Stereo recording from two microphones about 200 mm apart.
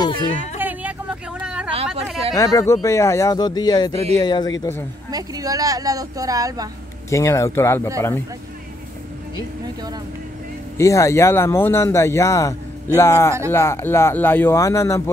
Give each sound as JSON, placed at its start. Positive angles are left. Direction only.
{"t": 0.0, "sound": "speech", "side_deg": 25}
{"t": 0.6, "sound": "vehicle", "side_deg": -10}
{"t": 2.3, "sound": "speech", "side_deg": 15}
{"t": 5.1, "sound": "speech", "side_deg": -20}
{"t": 7.1, "sound": "speech", "side_deg": 15}
{"t": 10.8, "sound": "speech", "side_deg": 15}